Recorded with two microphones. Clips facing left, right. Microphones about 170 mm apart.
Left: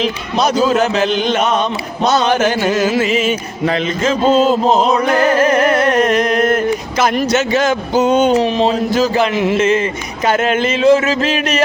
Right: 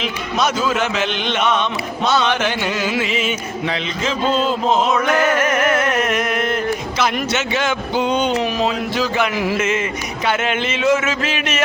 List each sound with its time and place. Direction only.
0.0 s music: 35° left (ahead or behind)
8.4 s a sound: 30° left (ahead or behind)
8.7 s music: 40° left (ahead or behind)
9.3 s music: 20° left (ahead or behind); by 11.6 s 40° left (ahead or behind)